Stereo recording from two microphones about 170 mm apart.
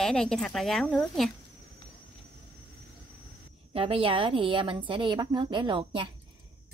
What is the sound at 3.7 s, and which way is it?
A woman's voice, 35° right (ahead or behind).